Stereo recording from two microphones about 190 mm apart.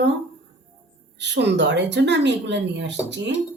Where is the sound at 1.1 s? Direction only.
65° right (ahead or behind).